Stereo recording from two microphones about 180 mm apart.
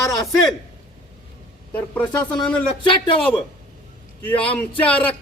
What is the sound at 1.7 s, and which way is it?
Speech, 10° left (ahead or behind).